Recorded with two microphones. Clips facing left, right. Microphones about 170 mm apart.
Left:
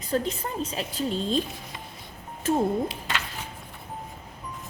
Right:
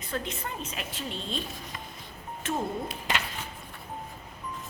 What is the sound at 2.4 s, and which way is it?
Speech, 35° left (ahead or behind).